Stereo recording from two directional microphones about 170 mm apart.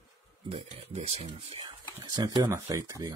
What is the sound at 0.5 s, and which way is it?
Speech, 35° right (ahead or behind).